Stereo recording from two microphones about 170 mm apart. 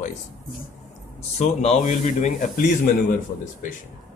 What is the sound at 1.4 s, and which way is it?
Speech, 40° left (ahead or behind).